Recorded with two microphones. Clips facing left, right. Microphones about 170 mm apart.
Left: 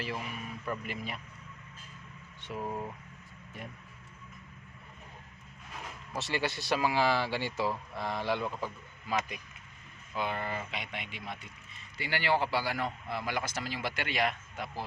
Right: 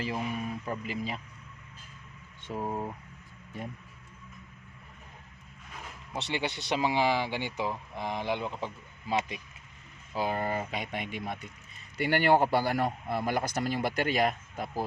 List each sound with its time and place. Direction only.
0.6 s speech: 30° right (ahead or behind)
2.5 s speech: 30° right (ahead or behind)
6.1 s speech: 20° right (ahead or behind)
10.2 s speech: 40° right (ahead or behind)